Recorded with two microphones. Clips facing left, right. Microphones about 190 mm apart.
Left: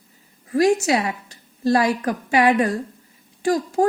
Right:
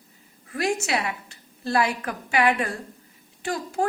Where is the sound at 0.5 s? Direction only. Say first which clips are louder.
Left 8 dB; 35° left (ahead or behind).